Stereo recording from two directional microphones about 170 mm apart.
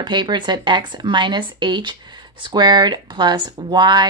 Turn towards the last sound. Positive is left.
turn(degrees=-25)  # may be behind; listen again after turning